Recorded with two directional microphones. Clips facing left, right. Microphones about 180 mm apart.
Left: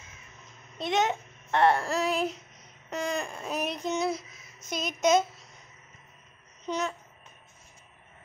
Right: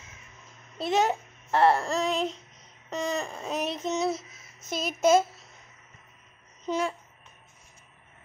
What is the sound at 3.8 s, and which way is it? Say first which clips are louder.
A child's voice: right 1 dB; centre (ahead or behind).